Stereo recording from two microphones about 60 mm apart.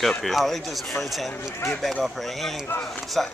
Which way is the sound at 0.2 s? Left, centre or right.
Centre.